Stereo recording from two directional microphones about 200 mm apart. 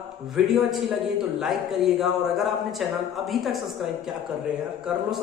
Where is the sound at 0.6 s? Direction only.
Centre (ahead or behind).